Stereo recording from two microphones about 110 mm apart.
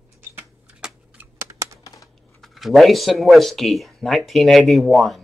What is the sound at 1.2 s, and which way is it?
Typing, 25° right (ahead or behind).